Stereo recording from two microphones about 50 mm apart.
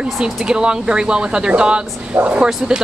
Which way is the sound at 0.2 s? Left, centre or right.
Centre.